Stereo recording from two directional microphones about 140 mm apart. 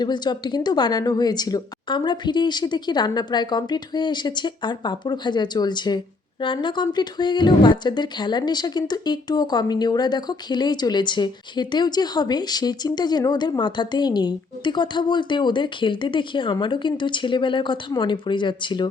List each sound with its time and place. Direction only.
0.0 s a woman's voice: 30° left (ahead or behind)